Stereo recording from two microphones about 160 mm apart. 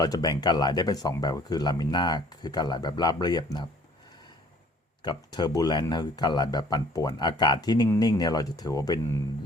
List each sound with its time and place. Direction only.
0.0 s speech: 25° left (ahead or behind)
5.0 s speech: 25° left (ahead or behind)